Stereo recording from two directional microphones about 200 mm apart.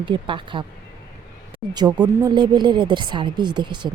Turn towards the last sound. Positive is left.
turn(degrees=-20)  # may be behind; listen again after turning